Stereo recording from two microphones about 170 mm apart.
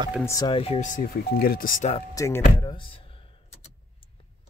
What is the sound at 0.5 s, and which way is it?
Speech, 35° left (ahead or behind).